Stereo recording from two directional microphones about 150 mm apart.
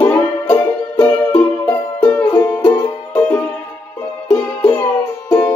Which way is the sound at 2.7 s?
30° left (ahead or behind).